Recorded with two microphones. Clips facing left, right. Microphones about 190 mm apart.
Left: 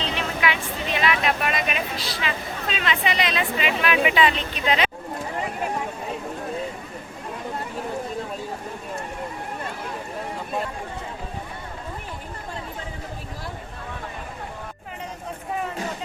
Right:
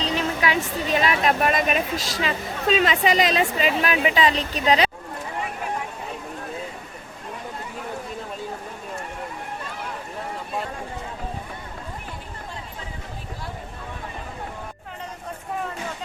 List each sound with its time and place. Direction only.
0.0 s speech: 40° right (ahead or behind)